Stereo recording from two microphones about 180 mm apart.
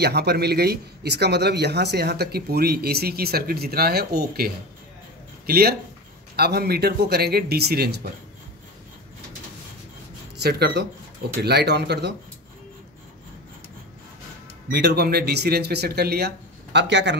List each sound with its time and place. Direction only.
0.0 s a man's voice: 65° right (ahead or behind)
5.5 s a man's voice: 60° right (ahead or behind)
10.4 s speech: 70° right (ahead or behind)
14.7 s a man's voice: 65° right (ahead or behind)